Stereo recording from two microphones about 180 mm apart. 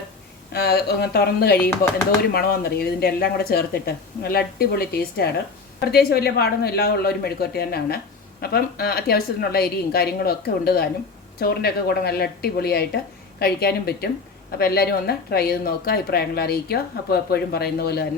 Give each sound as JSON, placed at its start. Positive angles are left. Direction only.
{"t": 0.5, "sound": "speech", "side_deg": 60}